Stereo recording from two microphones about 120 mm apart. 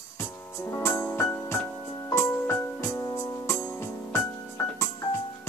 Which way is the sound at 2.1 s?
20° left (ahead or behind).